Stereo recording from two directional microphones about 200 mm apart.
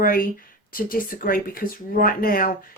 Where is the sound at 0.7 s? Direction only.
45° left (ahead or behind).